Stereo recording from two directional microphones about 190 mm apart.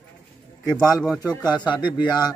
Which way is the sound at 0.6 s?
20° left (ahead or behind).